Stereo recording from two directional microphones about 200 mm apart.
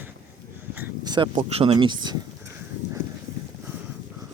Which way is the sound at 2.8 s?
15° left (ahead or behind).